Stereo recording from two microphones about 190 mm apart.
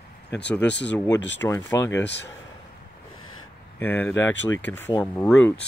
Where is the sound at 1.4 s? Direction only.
15° left (ahead or behind).